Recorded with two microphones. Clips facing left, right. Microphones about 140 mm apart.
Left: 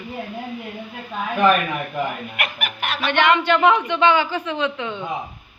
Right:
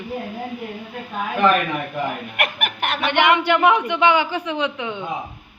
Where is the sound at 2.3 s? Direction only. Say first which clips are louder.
Right 3 dB; 50° right (ahead or behind).